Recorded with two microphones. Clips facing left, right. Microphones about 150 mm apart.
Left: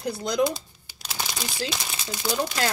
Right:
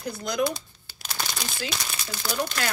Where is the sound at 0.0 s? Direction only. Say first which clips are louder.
Left 3 dB; 30° left (ahead or behind).